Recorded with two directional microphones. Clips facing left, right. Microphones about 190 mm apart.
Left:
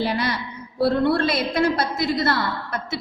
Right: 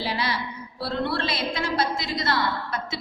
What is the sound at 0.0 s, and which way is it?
A woman's voice, 55° left (ahead or behind).